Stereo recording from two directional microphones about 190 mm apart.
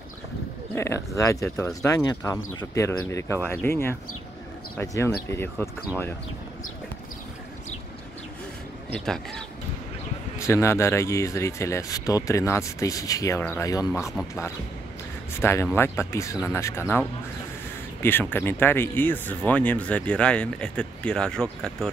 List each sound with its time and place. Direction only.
0.7 s speech: 15° left (ahead or behind)
8.9 s speech: 5° left (ahead or behind)
10.4 s speech: 15° left (ahead or behind)
15.4 s speech: 10° left (ahead or behind)
18.0 s speech: 10° left (ahead or behind)